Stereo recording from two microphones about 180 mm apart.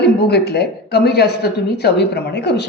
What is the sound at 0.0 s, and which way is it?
Speech, 65° left (ahead or behind).